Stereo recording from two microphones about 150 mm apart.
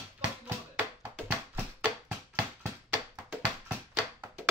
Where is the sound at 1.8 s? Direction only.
10° right (ahead or behind).